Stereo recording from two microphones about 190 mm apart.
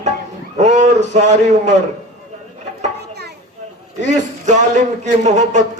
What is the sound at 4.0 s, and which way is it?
A man's voice, 40° right (ahead or behind).